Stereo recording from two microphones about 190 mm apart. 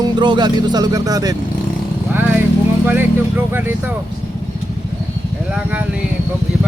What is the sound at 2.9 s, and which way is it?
Speech, 10° right (ahead or behind).